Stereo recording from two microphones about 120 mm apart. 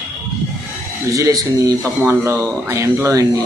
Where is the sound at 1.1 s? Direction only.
30° right (ahead or behind).